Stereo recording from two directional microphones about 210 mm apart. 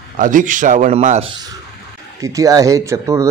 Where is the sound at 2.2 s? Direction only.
15° right (ahead or behind).